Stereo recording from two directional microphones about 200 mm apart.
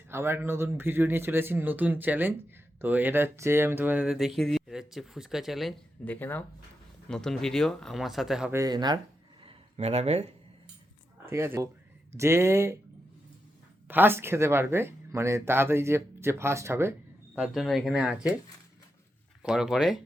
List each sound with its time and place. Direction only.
0.1 s speech: 10° right (ahead or behind)
8.5 s speech: 20° right (ahead or behind)
9.4 s a sound: 30° right (ahead or behind)
11.3 s speech: 10° right (ahead or behind)
13.8 s speech: 10° right (ahead or behind)
19.4 s speech: centre (ahead or behind)